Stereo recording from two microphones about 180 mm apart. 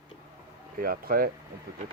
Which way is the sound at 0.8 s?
55° right (ahead or behind).